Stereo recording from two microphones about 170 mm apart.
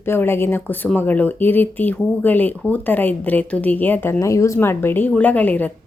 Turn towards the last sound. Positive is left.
turn(degrees=10)  # may be behind; listen again after turning